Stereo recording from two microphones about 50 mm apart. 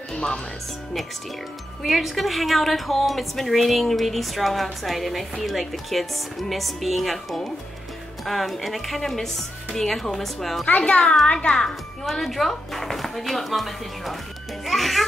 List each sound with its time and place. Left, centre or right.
0.1 s music: centre
1.8 s a woman's voice: centre
10.8 s a child's voice: centre
14.6 s music: centre